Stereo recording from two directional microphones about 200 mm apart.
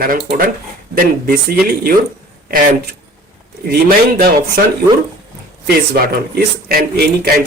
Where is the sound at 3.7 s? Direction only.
50° right (ahead or behind).